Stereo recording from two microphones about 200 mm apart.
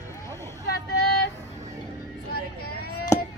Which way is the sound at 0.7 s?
55° left (ahead or behind).